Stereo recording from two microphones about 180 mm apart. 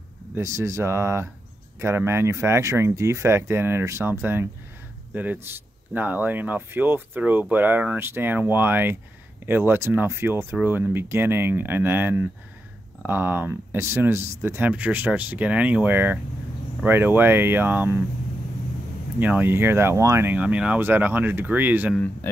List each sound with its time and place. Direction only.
0.3 s speech: 15° right (ahead or behind)
19.1 s speech: 10° right (ahead or behind)
21.9 s speech: 10° left (ahead or behind)